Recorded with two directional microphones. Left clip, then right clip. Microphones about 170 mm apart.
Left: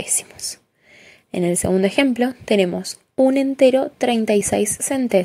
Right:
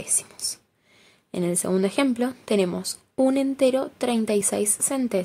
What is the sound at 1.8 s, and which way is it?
A woman's voice, 20° left (ahead or behind).